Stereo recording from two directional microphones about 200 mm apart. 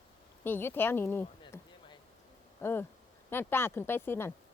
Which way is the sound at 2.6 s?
10° left (ahead or behind).